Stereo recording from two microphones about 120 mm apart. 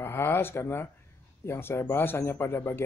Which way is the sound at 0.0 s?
20° left (ahead or behind).